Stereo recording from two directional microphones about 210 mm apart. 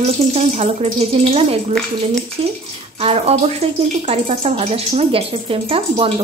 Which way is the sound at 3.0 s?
30° right (ahead or behind).